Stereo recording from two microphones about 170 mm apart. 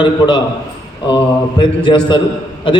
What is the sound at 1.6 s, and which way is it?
Speech, 30° left (ahead or behind).